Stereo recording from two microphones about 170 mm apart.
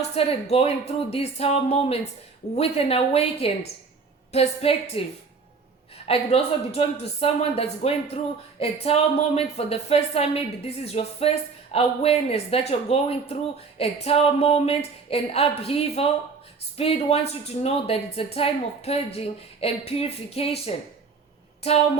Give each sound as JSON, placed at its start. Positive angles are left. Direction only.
{"t": 0.1, "sound": "a woman's voice", "side_deg": 35}
{"t": 6.1, "sound": "a woman's voice", "side_deg": 35}